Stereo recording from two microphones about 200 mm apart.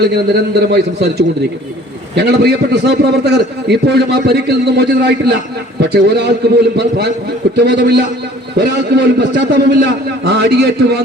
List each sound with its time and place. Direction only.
0.0 s a man's voice: 55° right (ahead or behind)